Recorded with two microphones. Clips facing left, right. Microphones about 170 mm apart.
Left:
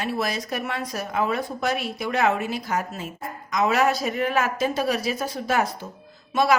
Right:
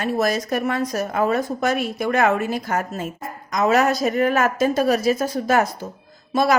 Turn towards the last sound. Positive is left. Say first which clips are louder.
# right 2 dB
turn(degrees=-40)  # may be behind; listen again after turning